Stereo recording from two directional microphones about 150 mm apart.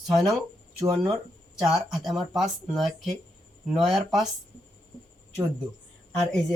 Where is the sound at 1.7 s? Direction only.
Centre (ahead or behind).